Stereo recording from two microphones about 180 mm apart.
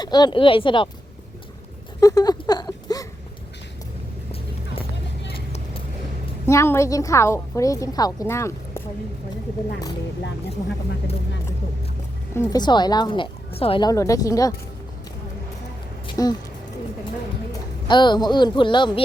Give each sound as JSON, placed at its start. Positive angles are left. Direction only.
{"t": 0.0, "sound": "speech", "side_deg": 25}
{"t": 2.0, "sound": "a sound", "side_deg": 20}
{"t": 4.3, "sound": "vehicle", "side_deg": 30}
{"t": 6.5, "sound": "a woman's voice", "side_deg": 15}
{"t": 12.3, "sound": "speech", "side_deg": 15}
{"t": 16.0, "sound": "a sound", "side_deg": 20}
{"t": 17.8, "sound": "speech", "side_deg": 25}